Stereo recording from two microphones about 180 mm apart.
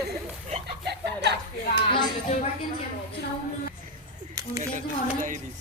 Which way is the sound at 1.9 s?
30° left (ahead or behind).